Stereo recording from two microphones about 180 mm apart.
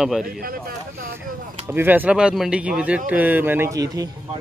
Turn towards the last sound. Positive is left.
turn(degrees=-20)  # may be behind; listen again after turning